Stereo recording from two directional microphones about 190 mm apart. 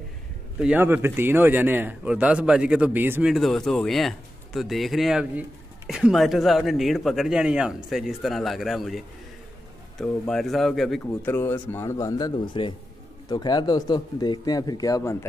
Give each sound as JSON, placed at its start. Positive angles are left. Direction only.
{"t": 0.6, "sound": "speech", "side_deg": -10}